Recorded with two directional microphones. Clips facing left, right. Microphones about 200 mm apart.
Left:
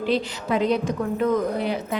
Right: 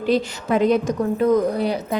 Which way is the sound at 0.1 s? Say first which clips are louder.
Right 5 dB; 50° right (ahead or behind).